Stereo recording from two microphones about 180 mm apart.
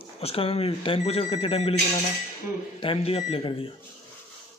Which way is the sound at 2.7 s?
30° left (ahead or behind).